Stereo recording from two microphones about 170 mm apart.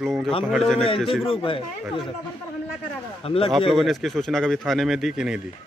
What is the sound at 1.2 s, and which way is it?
Speech, 30° left (ahead or behind).